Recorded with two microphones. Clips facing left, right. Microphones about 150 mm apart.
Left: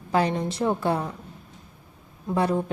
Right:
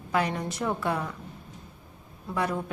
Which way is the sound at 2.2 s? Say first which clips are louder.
Left 6 dB; 30° left (ahead or behind).